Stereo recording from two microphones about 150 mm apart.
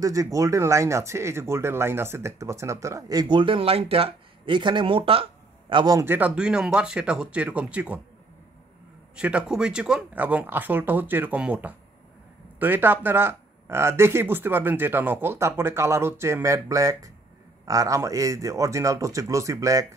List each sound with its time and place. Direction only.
0.0 s speech: 20° right (ahead or behind)
5.9 s speech: 15° right (ahead or behind)
9.1 s speech: 5° right (ahead or behind)